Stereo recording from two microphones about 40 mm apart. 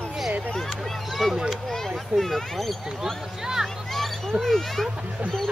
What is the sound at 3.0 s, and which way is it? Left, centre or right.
Speech, centre.